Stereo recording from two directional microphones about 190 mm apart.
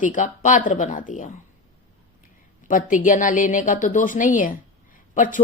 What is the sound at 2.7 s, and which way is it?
A woman's voice, 45° left (ahead or behind).